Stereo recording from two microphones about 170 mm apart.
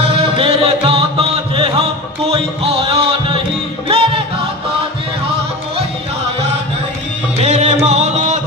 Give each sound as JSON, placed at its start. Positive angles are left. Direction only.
{"t": 0.0, "sound": "music", "side_deg": -35}
{"t": 7.4, "sound": "music", "side_deg": -40}